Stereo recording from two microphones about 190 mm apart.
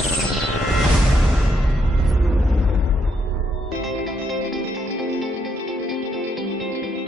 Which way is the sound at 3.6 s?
Centre (ahead or behind).